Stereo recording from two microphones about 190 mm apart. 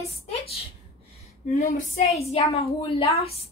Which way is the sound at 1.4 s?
40° left (ahead or behind).